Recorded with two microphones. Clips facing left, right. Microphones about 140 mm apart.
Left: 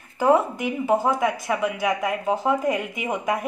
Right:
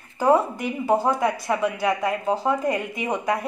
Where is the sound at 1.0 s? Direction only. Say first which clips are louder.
Even; 5° left (ahead or behind).